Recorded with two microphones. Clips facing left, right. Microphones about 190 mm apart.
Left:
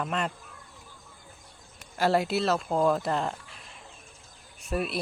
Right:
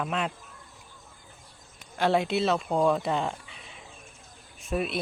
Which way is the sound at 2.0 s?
5° left (ahead or behind).